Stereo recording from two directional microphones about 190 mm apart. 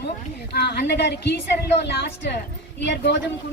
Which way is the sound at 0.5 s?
60° left (ahead or behind).